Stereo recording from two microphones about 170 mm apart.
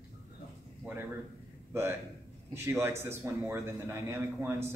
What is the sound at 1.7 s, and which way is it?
A man's voice, 15° right (ahead or behind).